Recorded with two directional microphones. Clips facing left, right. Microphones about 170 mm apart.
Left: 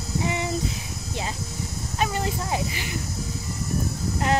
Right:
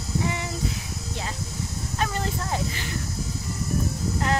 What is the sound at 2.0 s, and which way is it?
Speech, 10° left (ahead or behind).